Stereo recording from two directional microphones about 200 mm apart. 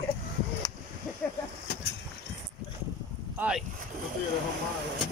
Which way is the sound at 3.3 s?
5° right (ahead or behind).